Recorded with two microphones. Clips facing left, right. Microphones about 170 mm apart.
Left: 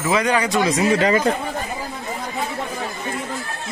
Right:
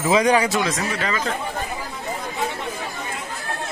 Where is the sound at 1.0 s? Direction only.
30° left (ahead or behind).